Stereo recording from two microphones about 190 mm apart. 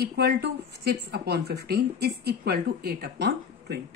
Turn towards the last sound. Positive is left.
turn(degrees=-60)  # may be behind; listen again after turning